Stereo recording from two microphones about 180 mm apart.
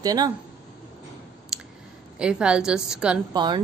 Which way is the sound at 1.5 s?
5° right (ahead or behind).